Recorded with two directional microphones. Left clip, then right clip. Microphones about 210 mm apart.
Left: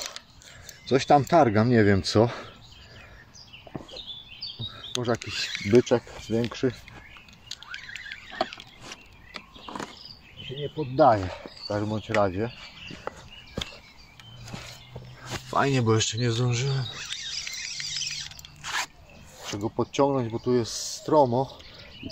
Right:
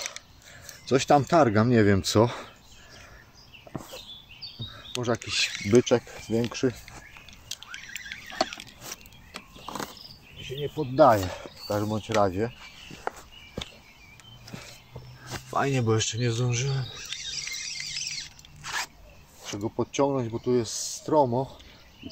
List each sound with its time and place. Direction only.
0.8 s speech: 5° right (ahead or behind)
4.4 s a sound: 45° left (ahead or behind)
4.9 s speech: centre (ahead or behind)
7.5 s rodents: 25° right (ahead or behind)
8.4 s vehicle: 40° right (ahead or behind)
8.8 s a sound: 30° right (ahead or behind)
11.0 s speech: 40° right (ahead or behind)
12.1 s speech: 10° right (ahead or behind)
13.6 s a sound: 30° left (ahead or behind)
15.2 s speech: 25° left (ahead or behind)
16.4 s a sound: 25° left (ahead or behind)
18.6 s biting: 20° left (ahead or behind)
19.5 s speech: 20° left (ahead or behind)